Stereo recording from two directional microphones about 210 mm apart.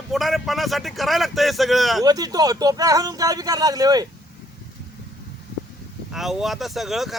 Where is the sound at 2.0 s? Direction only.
20° right (ahead or behind).